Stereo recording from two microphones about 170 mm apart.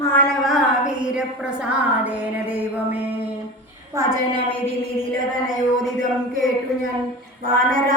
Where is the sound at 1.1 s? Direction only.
5° right (ahead or behind).